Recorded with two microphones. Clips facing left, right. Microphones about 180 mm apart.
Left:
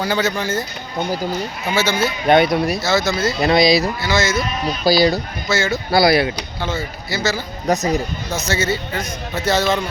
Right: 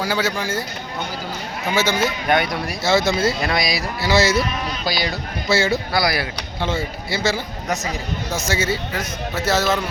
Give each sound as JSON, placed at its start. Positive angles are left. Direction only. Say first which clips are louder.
{"t": 0.0, "sound": "speech", "louder": "left 2 dB", "side_deg": -10}
{"t": 1.7, "sound": "speech", "louder": "left 1 dB", "side_deg": -15}
{"t": 2.2, "sound": "speech", "louder": "left 6 dB", "side_deg": 25}
{"t": 2.8, "sound": "a man's voice", "louder": "right 1 dB", "side_deg": -25}
{"t": 3.4, "sound": "speech", "louder": "left 8 dB", "side_deg": 25}
{"t": 4.0, "sound": "speech", "louder": "right 2 dB", "side_deg": -35}
{"t": 4.9, "sound": "speech", "louder": "left 11 dB", "side_deg": 30}
{"t": 5.5, "sound": "speech", "louder": "right 1 dB", "side_deg": -30}
{"t": 5.9, "sound": "speech", "louder": "left 7 dB", "side_deg": 25}
{"t": 6.6, "sound": "a man's voice", "louder": "right 3 dB", "side_deg": -30}
{"t": 7.7, "sound": "speech", "louder": "left 7 dB", "side_deg": 35}
{"t": 8.3, "sound": "speech", "louder": "left 2 dB", "side_deg": -10}